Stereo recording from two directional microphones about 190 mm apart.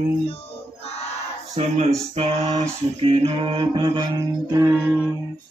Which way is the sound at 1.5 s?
35° right (ahead or behind).